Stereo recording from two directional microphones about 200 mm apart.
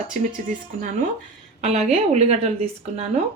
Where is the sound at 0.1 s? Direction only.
40° right (ahead or behind).